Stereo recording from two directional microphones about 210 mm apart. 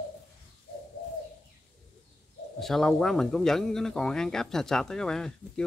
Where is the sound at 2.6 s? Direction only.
Centre (ahead or behind).